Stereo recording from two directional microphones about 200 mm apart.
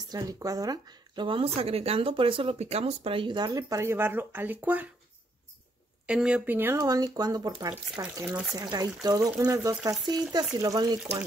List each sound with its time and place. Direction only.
0.1 s speech: 15° right (ahead or behind)
6.0 s speech: 5° right (ahead or behind)
8.3 s speech: 5° right (ahead or behind)
8.7 s speech: 20° right (ahead or behind)